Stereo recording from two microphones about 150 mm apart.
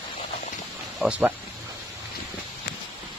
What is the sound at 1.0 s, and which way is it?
Speech, 10° right (ahead or behind).